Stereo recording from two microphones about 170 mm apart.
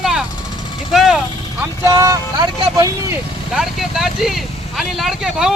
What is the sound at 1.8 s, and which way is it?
Vehicle, 20° right (ahead or behind).